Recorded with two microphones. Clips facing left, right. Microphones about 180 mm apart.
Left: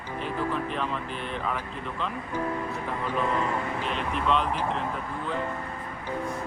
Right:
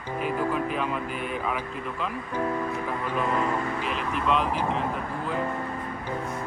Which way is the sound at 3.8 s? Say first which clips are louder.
Even; 5° right (ahead or behind).